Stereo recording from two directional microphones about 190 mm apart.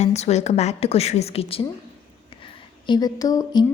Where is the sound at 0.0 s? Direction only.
35° left (ahead or behind).